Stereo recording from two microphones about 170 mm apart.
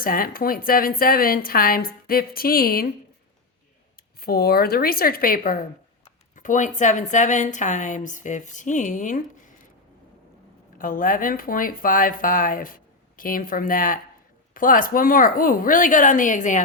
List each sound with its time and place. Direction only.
0.0 s a woman's voice: 55° left (ahead or behind)
4.2 s a woman's voice: 65° left (ahead or behind); by 9.2 s 45° left (ahead or behind)
10.8 s a woman's voice: 55° left (ahead or behind)